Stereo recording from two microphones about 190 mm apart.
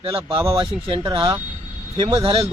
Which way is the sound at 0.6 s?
25° right (ahead or behind).